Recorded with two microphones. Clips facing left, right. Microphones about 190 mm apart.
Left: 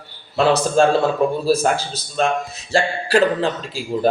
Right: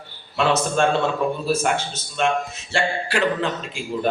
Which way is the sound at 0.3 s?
35° left (ahead or behind).